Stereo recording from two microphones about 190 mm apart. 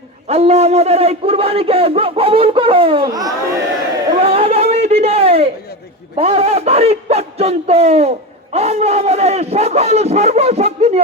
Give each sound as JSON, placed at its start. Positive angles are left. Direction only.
{"t": 0.3, "sound": "a man's voice", "side_deg": -35}
{"t": 4.2, "sound": "a sound", "side_deg": -30}
{"t": 6.1, "sound": "a man's voice", "side_deg": -30}